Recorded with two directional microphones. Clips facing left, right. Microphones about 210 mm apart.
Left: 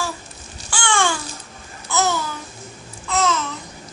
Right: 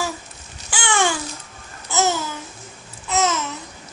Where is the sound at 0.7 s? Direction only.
20° right (ahead or behind).